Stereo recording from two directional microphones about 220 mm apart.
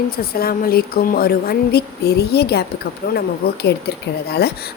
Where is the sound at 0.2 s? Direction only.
45° left (ahead or behind).